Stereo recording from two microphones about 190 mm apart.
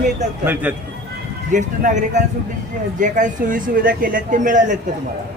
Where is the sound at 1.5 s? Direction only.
40° right (ahead or behind).